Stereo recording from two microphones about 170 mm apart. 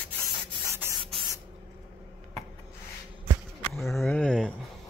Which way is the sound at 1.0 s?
30° right (ahead or behind).